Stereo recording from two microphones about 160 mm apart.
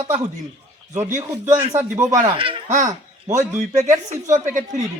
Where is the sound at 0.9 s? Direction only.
15° right (ahead or behind).